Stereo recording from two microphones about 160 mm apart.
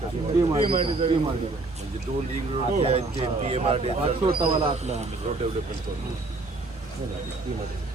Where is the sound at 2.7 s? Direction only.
40° right (ahead or behind).